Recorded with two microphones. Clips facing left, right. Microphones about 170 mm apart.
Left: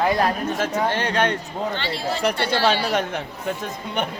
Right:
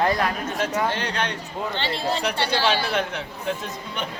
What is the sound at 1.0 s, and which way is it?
Speech, 50° left (ahead or behind).